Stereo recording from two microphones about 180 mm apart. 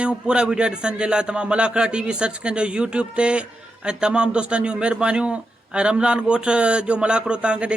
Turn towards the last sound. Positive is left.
turn(degrees=-5)  # may be behind; listen again after turning